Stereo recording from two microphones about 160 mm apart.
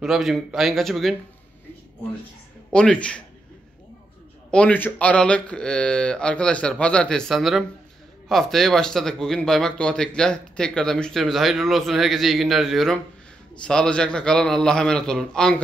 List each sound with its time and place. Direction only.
0.0 s speech: centre (ahead or behind)
2.7 s speech: 5° left (ahead or behind)
4.5 s speech: 5° left (ahead or behind)